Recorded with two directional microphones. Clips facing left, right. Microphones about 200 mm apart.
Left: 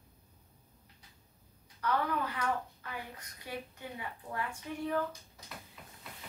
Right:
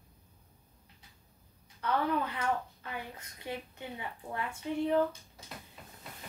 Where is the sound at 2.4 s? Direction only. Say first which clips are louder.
Right 2 dB; 25° right (ahead or behind).